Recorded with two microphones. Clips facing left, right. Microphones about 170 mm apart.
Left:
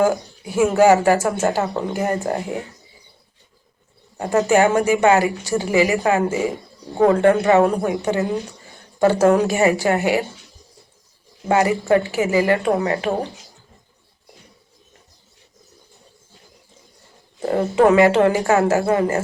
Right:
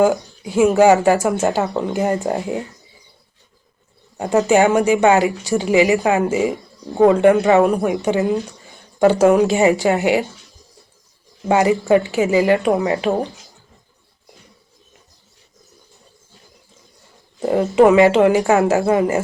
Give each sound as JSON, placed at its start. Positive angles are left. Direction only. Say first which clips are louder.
{"t": 0.0, "sound": "speech", "louder": "right 3 dB", "side_deg": -20}
{"t": 4.2, "sound": "speech", "louder": "right 2 dB", "side_deg": -15}
{"t": 11.4, "sound": "speech", "louder": "right 2 dB", "side_deg": -20}
{"t": 17.4, "sound": "speech", "louder": "right 3 dB", "side_deg": -20}